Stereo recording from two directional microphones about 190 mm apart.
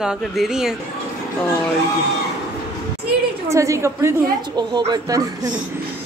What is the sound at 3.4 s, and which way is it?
Speech, 15° right (ahead or behind).